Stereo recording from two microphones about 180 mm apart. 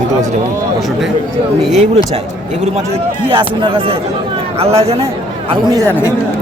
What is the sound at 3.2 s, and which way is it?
Speech, 25° right (ahead or behind).